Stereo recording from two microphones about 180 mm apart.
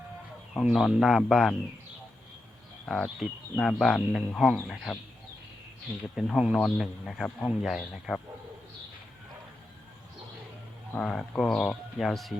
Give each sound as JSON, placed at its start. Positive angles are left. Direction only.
{"t": 0.5, "sound": "speech", "side_deg": 0}
{"t": 2.8, "sound": "speech", "side_deg": 5}
{"t": 6.1, "sound": "speech", "side_deg": 0}
{"t": 10.9, "sound": "speech", "side_deg": 5}